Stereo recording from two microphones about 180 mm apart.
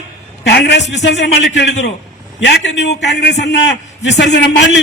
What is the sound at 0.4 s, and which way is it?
A man's voice, 70° left (ahead or behind).